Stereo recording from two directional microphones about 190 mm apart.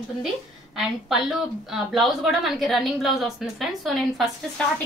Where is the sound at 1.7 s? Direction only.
Centre (ahead or behind).